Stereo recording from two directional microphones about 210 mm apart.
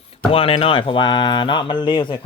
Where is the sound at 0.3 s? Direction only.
25° left (ahead or behind).